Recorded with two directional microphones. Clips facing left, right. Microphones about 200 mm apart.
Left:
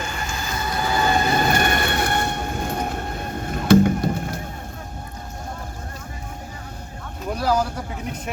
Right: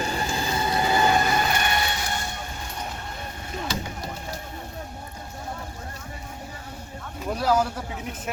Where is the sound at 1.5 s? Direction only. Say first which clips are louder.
Left 5 dB; 50° left (ahead or behind).